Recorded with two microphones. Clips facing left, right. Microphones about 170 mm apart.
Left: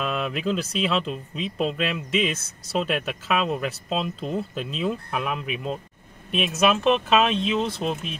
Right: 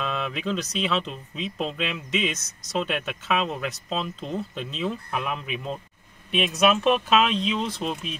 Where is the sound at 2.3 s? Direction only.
30° left (ahead or behind).